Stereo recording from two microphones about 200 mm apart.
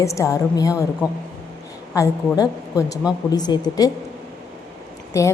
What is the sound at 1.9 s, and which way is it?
A woman's voice, 15° left (ahead or behind).